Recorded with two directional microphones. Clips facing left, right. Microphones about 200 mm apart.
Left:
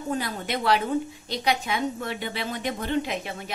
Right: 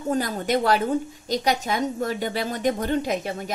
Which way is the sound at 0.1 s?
40° right (ahead or behind).